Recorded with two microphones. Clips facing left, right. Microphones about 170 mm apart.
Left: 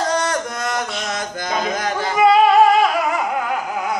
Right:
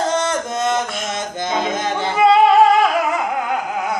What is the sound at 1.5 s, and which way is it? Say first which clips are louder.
Yodeling: right 1 dB; 25° right (ahead or behind).